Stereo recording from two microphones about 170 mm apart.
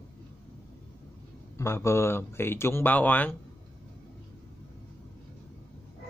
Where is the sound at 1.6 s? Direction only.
15° left (ahead or behind).